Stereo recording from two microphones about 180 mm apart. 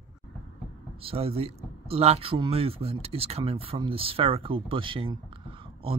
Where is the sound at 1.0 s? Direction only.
35° right (ahead or behind).